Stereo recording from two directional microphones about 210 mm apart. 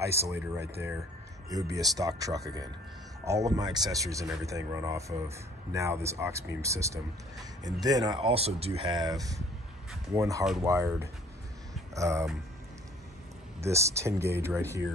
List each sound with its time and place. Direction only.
0.0 s speech: 15° right (ahead or behind)
13.6 s speech: 15° right (ahead or behind)